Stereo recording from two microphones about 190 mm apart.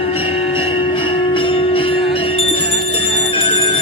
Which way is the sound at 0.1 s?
30° left (ahead or behind).